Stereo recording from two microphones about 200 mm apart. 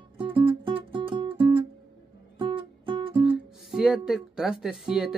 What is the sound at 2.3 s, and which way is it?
Music, 25° right (ahead or behind).